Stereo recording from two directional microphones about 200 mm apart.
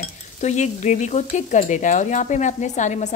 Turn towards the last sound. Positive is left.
turn(degrees=35)  # may be behind; listen again after turning